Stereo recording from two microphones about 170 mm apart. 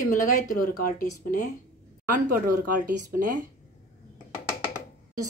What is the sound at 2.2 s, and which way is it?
A woman's voice, 50° right (ahead or behind).